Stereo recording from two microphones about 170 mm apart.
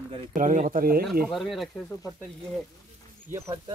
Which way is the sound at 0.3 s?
50° right (ahead or behind).